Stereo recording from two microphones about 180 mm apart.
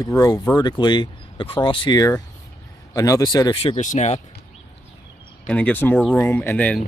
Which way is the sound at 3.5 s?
30° left (ahead or behind).